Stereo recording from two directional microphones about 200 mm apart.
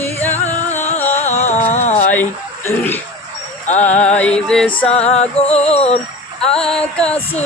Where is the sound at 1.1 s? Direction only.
35° left (ahead or behind).